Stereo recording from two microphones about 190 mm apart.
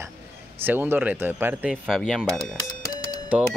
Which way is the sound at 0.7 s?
10° right (ahead or behind).